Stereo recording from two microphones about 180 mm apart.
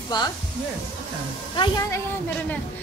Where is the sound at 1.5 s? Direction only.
25° left (ahead or behind).